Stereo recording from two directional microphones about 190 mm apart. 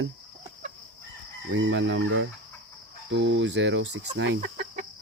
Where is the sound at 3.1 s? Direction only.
70° right (ahead or behind).